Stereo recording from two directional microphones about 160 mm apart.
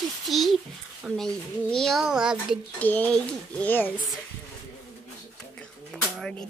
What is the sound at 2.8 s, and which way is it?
Speech, 10° left (ahead or behind).